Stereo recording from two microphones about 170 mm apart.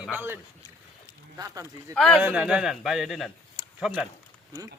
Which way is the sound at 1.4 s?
20° right (ahead or behind).